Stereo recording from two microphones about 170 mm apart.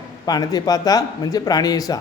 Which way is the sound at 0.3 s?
25° left (ahead or behind).